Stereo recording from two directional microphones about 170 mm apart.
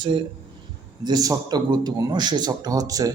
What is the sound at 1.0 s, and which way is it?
A man's voice, 25° right (ahead or behind).